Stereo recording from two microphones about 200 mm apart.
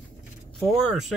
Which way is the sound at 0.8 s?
Centre (ahead or behind).